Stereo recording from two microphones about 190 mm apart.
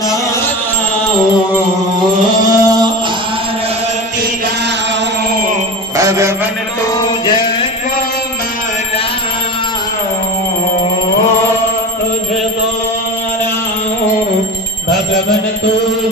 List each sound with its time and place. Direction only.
2.4 s music: 20° right (ahead or behind)
6.0 s a man's voice: 15° right (ahead or behind)